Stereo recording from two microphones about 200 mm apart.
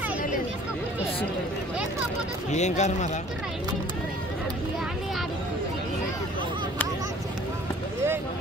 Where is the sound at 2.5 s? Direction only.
35° left (ahead or behind).